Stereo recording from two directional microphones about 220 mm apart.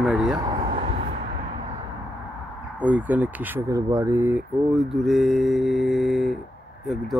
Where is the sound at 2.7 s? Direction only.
5° right (ahead or behind).